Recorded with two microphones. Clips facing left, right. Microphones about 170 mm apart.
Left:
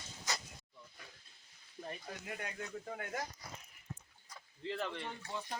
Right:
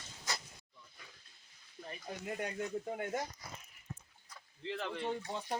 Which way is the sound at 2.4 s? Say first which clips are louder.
Right 6 dB; 25° right (ahead or behind).